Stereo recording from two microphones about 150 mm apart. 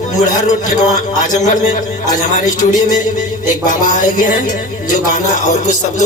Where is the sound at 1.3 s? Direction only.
55° left (ahead or behind).